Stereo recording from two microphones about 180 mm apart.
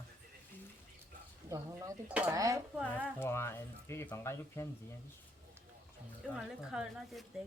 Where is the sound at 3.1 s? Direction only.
15° left (ahead or behind).